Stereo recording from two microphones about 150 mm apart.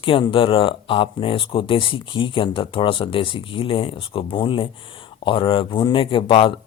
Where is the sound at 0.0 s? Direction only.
35° left (ahead or behind).